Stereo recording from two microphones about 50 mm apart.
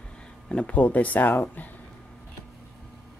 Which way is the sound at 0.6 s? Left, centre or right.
Left.